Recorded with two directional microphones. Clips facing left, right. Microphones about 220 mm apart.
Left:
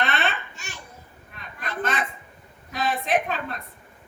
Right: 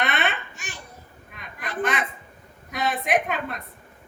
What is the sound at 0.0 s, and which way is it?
Babbling, 15° right (ahead or behind).